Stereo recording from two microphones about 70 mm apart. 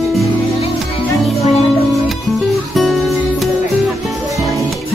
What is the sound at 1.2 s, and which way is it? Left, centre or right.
Music, centre.